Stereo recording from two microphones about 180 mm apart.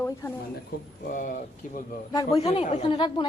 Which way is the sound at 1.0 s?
45° left (ahead or behind).